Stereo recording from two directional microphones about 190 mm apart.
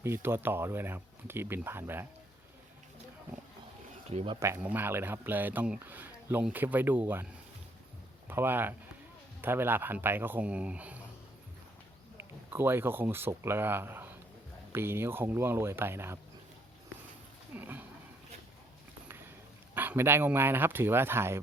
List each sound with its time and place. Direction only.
0.0 s speech: 10° right (ahead or behind)
4.1 s speech: 35° right (ahead or behind)
4.4 s speech: 10° right (ahead or behind)
8.3 s speech: 10° right (ahead or behind)
12.1 s speech: 10° right (ahead or behind)
17.5 s a sound: 10° right (ahead or behind)
19.7 s speech: 10° right (ahead or behind)